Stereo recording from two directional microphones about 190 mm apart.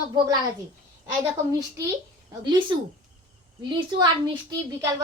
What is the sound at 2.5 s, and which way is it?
Speech, 25° right (ahead or behind).